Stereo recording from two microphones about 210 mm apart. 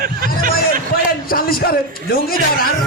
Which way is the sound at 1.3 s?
45° left (ahead or behind).